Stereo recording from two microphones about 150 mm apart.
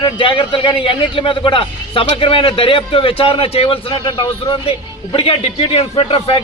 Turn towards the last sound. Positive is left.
turn(degrees=40)  # may be behind; listen again after turning